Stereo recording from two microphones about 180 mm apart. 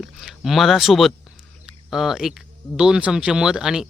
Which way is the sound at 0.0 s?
Centre (ahead or behind).